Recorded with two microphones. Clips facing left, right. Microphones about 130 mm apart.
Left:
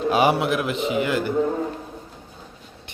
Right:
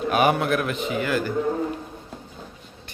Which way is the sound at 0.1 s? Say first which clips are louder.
Left 1 dB; 25° left (ahead or behind).